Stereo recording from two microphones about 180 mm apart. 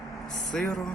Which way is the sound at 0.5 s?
Centre (ahead or behind).